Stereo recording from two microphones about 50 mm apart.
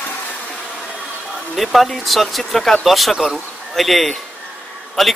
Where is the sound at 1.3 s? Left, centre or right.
Centre.